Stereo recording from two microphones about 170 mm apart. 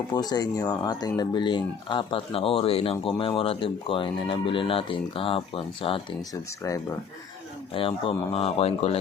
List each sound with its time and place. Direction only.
0.1 s speech: 25° left (ahead or behind)
6.6 s speech: 20° left (ahead or behind)
7.7 s speech: 30° left (ahead or behind)